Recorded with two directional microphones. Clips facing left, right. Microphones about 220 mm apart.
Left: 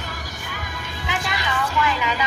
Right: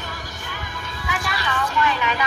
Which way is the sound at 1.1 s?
20° left (ahead or behind).